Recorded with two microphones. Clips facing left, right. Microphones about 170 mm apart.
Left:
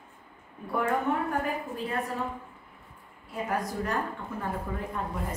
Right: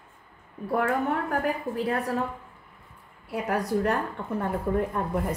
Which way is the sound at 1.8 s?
75° right (ahead or behind).